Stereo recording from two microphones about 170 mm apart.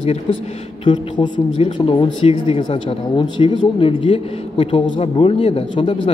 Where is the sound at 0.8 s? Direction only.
30° left (ahead or behind).